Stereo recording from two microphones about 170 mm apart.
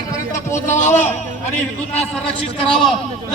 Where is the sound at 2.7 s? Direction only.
Centre (ahead or behind).